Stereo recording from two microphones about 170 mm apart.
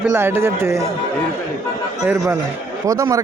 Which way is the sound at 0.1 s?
15° right (ahead or behind).